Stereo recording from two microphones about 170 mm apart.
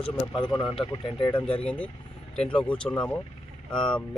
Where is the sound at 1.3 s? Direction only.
30° left (ahead or behind).